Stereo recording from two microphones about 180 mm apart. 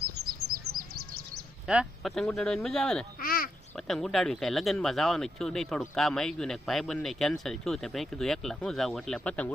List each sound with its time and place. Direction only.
0.2 s bird: 55° right (ahead or behind)
1.6 s speech: 5° right (ahead or behind)
3.2 s a sound: 55° left (ahead or behind)
3.8 s speech: centre (ahead or behind)